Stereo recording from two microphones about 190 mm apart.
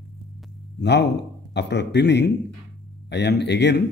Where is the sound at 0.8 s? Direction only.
65° left (ahead or behind).